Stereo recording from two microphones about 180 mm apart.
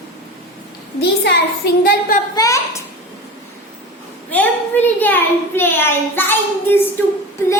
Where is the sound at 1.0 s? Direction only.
65° left (ahead or behind).